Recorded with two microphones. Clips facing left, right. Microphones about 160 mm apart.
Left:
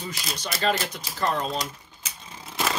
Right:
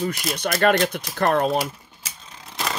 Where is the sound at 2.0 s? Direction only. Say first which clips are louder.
Left 1 dB; centre (ahead or behind).